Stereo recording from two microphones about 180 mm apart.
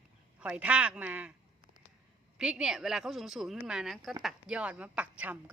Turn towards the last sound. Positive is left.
turn(degrees=-10)  # may be behind; listen again after turning